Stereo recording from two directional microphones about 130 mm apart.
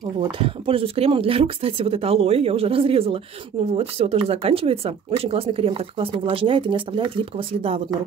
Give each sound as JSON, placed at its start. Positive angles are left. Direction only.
{"t": 0.2, "sound": "speech", "side_deg": -45}